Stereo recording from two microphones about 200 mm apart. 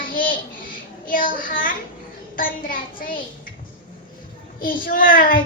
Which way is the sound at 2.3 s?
45° left (ahead or behind).